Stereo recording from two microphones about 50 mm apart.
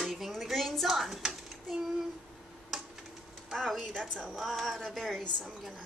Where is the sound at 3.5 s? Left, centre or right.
Centre.